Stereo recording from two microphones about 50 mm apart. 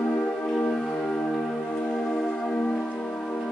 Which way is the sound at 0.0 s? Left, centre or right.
Left.